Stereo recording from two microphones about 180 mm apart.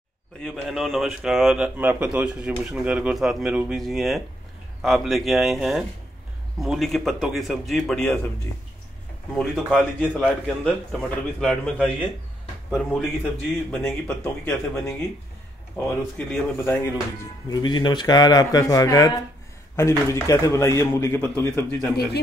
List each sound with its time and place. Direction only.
0.4 s speech: centre (ahead or behind)
9.3 s speech: 5° left (ahead or behind)
13.7 s a man's voice: 5° left (ahead or behind)
17.5 s a man's voice: 25° left (ahead or behind)